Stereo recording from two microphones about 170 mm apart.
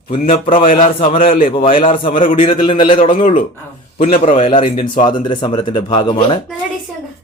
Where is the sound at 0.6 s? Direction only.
50° left (ahead or behind).